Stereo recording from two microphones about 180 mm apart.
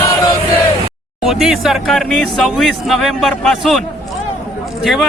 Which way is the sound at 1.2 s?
Centre (ahead or behind).